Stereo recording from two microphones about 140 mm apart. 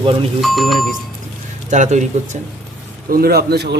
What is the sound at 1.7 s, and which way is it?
Speech, 60° right (ahead or behind).